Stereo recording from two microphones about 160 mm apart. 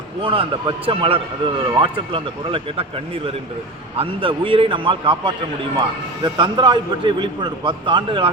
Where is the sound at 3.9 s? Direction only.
35° right (ahead or behind).